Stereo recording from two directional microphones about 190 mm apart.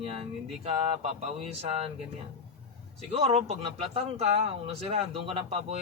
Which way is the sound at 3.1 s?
35° right (ahead or behind).